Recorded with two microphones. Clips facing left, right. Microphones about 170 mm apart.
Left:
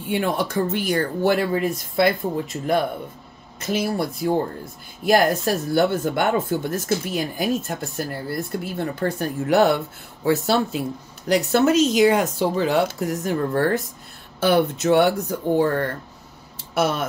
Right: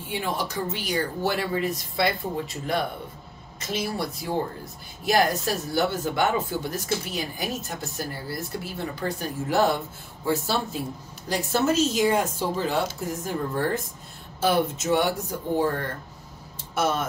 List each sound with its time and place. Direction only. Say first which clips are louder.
0.1 s speech: left 7 dB; 60° left (ahead or behind)
3.5 s speech: left 6 dB; 60° left (ahead or behind)